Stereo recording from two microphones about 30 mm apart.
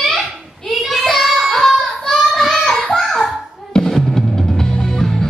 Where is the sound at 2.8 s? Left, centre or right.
Centre.